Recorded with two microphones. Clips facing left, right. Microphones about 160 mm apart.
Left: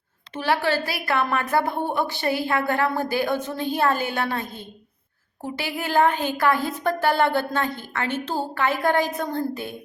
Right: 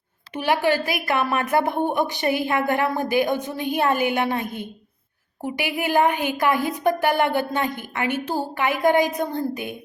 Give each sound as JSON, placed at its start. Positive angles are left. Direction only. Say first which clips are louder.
{"t": 0.3, "sound": "a woman's voice", "louder": "right 2 dB", "side_deg": -15}